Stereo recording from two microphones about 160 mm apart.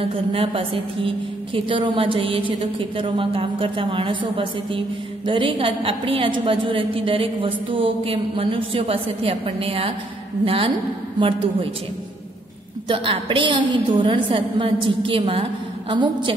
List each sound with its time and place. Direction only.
0.3 s a woman's voice: 35° right (ahead or behind)
12.8 s a woman's voice: 35° right (ahead or behind)